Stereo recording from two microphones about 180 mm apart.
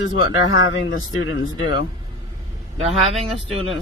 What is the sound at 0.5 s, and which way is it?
Speech, 90° left.